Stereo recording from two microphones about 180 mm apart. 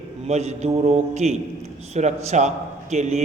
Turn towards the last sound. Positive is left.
turn(degrees=-40)  # may be behind; listen again after turning